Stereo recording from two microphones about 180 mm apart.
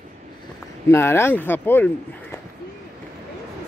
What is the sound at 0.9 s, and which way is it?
Speech, 15° left (ahead or behind).